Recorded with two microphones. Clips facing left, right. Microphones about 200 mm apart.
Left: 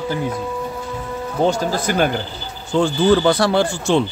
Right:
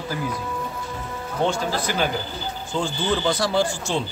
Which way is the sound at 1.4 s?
40° left (ahead or behind).